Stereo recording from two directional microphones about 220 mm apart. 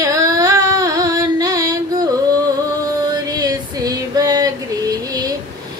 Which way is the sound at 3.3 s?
15° right (ahead or behind).